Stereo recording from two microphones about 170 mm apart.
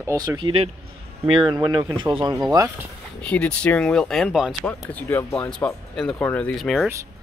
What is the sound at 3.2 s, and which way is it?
Speech, 5° left (ahead or behind).